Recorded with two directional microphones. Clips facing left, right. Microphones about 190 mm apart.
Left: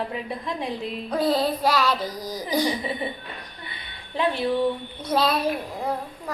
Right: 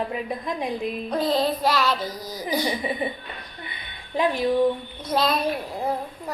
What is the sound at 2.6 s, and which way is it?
Speech, 15° right (ahead or behind).